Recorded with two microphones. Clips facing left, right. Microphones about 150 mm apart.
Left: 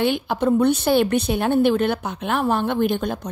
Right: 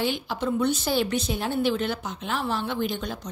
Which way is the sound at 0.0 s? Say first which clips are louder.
Left 7 dB; 55° left (ahead or behind).